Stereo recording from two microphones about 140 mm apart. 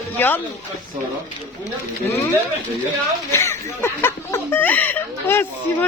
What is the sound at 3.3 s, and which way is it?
Speech, 20° left (ahead or behind).